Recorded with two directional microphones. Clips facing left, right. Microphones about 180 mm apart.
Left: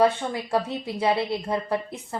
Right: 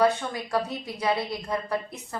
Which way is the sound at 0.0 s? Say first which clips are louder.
Left 2 dB; 25° left (ahead or behind).